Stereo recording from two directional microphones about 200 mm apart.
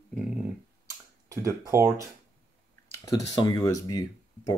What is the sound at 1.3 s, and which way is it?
Speech, 15° right (ahead or behind).